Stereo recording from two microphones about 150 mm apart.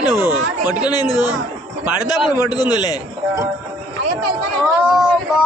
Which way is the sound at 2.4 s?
25° left (ahead or behind).